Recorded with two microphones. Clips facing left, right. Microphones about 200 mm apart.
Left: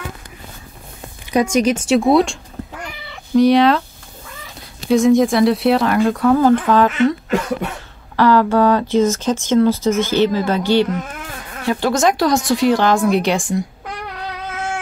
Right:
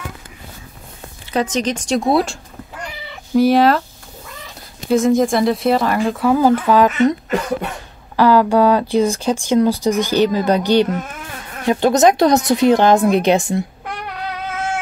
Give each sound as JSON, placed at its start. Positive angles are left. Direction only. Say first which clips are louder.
{"t": 1.3, "sound": "speech", "louder": "left 4 dB", "side_deg": 10}
{"t": 3.3, "sound": "speech", "louder": "left 1 dB", "side_deg": -5}
{"t": 4.8, "sound": "speech", "louder": "left 2 dB", "side_deg": 0}